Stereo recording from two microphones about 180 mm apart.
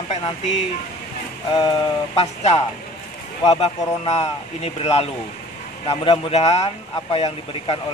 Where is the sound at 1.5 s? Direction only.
25° left (ahead or behind).